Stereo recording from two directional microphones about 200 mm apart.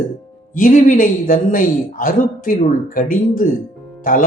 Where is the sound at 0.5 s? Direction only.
40° left (ahead or behind).